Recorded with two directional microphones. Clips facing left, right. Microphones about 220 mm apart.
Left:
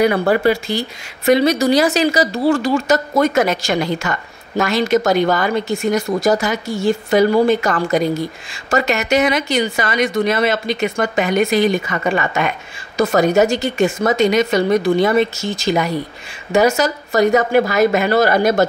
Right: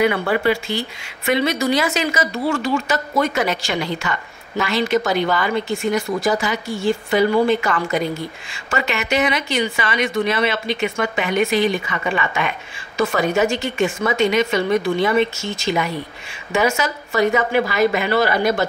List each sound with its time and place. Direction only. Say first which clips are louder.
0.0 s a woman's voice: left 4 dB; 40° left (ahead or behind)